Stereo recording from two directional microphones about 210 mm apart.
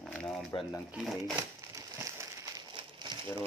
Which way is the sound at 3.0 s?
20° right (ahead or behind).